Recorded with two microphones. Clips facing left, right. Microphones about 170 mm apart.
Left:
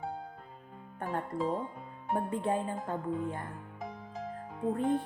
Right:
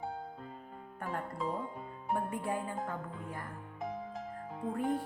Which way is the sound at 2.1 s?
25° left (ahead or behind).